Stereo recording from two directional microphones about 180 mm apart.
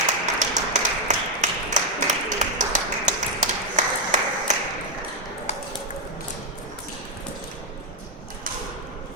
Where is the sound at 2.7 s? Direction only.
40° right (ahead or behind).